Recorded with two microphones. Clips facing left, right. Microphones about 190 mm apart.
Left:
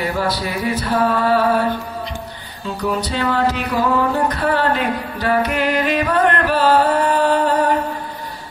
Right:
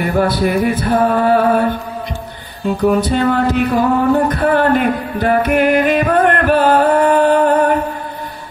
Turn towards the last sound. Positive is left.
turn(degrees=-55)  # may be behind; listen again after turning